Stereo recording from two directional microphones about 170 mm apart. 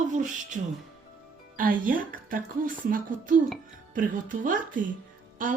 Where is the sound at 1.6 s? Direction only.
55° right (ahead or behind).